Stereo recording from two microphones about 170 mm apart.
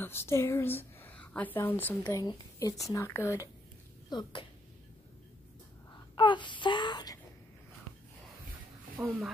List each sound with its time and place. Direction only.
0.0 s a woman's voice: 15° left (ahead or behind)
2.0 s a woman's voice: 20° left (ahead or behind)
6.1 s wail: 25° left (ahead or behind)
9.0 s speech: 10° right (ahead or behind)